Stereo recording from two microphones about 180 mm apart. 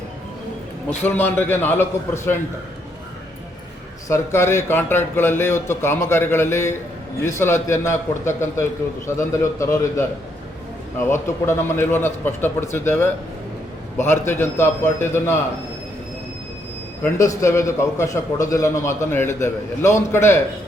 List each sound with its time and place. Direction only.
0.9 s a man's voice: 10° left (ahead or behind)
4.1 s a man's voice: 15° left (ahead or behind)
11.0 s a man's voice: 15° left (ahead or behind)
14.1 s a man's voice: 15° left (ahead or behind)
17.0 s a man's voice: 15° left (ahead or behind)